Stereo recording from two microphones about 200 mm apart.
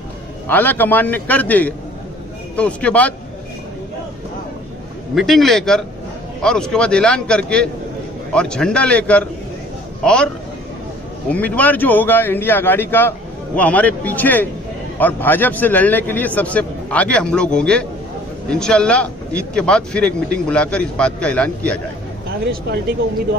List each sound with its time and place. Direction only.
0.5 s a man's voice: 10° left (ahead or behind)
5.1 s a man's voice: centre (ahead or behind)
22.5 s speech: 50° right (ahead or behind)